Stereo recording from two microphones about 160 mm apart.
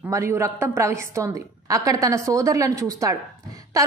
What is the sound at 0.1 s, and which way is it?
A woman's voice, 15° right (ahead or behind).